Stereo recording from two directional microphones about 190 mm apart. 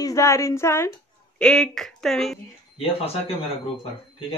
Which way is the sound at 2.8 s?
30° left (ahead or behind).